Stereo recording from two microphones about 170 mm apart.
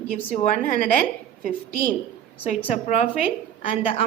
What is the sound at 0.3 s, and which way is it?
Speech, 45° left (ahead or behind).